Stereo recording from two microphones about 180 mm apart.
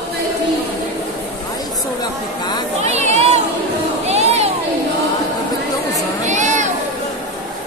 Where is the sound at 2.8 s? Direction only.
35° right (ahead or behind).